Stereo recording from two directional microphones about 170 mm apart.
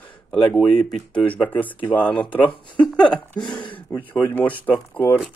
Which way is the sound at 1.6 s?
30° left (ahead or behind).